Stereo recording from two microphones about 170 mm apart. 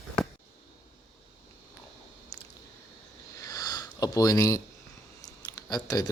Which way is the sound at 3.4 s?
25° left (ahead or behind).